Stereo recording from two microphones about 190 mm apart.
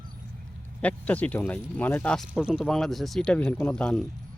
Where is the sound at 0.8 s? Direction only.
10° left (ahead or behind).